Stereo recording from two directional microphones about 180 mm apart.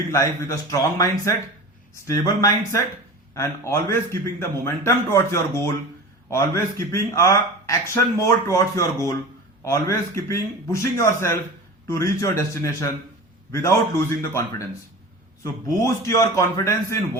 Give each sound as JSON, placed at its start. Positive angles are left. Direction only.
{"t": 0.1, "sound": "speech", "side_deg": 15}
{"t": 15.6, "sound": "speech", "side_deg": 15}